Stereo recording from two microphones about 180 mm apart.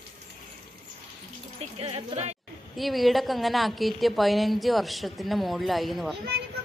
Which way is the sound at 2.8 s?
Centre (ahead or behind).